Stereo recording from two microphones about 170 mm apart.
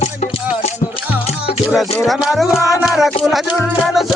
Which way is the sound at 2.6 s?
20° left (ahead or behind).